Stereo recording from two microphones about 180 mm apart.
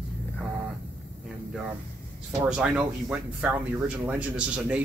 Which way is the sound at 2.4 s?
5° right (ahead or behind).